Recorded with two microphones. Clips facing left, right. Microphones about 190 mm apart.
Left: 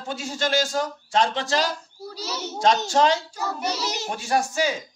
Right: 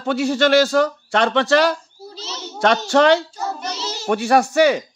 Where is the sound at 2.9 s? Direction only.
65° right (ahead or behind).